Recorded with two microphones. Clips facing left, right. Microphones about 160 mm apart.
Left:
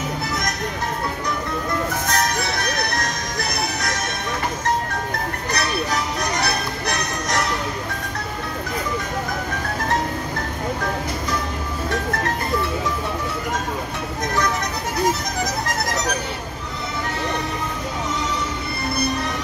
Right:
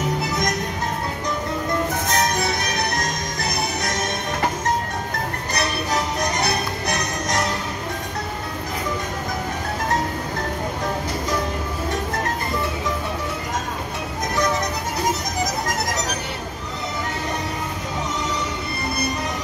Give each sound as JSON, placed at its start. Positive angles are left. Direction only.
{"t": 2.1, "sound": "music", "side_deg": -20}
{"t": 6.4, "sound": "music", "side_deg": -20}